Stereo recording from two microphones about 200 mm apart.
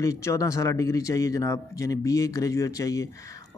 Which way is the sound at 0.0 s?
15° left (ahead or behind).